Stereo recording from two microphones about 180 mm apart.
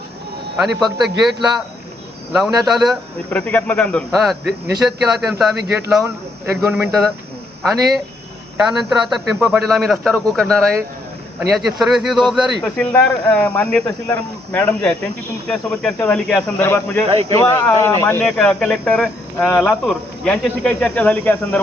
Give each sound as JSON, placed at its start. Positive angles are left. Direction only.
{"t": 0.8, "sound": "a man's voice", "side_deg": 0}
{"t": 17.1, "sound": "speech", "side_deg": -35}
{"t": 17.3, "sound": "a man's voice", "side_deg": 15}
{"t": 19.8, "sound": "speech", "side_deg": 5}